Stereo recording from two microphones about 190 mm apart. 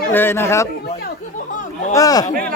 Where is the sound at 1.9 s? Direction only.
20° left (ahead or behind).